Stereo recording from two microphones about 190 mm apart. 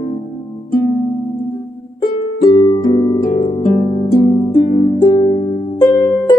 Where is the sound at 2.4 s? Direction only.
25° left (ahead or behind).